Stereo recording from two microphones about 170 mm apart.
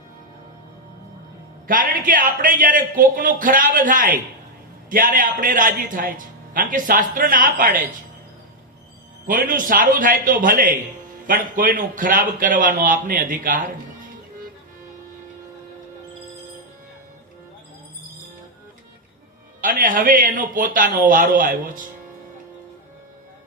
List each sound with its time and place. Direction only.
1.6 s a man's voice: 55° right (ahead or behind)
9.2 s a man's voice: 55° right (ahead or behind)
19.6 s a man's voice: 50° right (ahead or behind)